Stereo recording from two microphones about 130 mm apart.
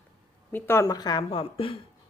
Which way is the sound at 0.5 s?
20° left (ahead or behind).